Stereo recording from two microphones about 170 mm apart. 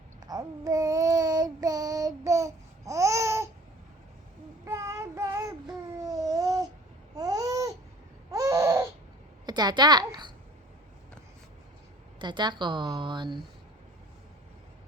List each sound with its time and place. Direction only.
0.2 s child singing: 20° right (ahead or behind)
4.6 s child singing: 15° right (ahead or behind)
7.2 s babbling: 20° right (ahead or behind)
8.3 s a sound: 20° right (ahead or behind)
12.2 s a woman's voice: 25° right (ahead or behind)